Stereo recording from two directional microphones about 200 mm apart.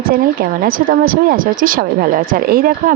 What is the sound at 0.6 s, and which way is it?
Speech, 45° right (ahead or behind).